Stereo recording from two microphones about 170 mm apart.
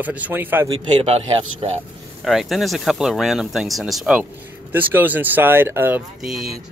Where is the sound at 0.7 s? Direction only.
35° right (ahead or behind).